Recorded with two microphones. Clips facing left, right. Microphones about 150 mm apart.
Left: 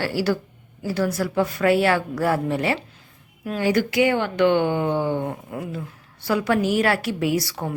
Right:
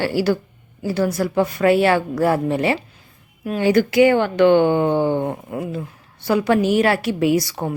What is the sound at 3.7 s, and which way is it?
Speech, 40° right (ahead or behind).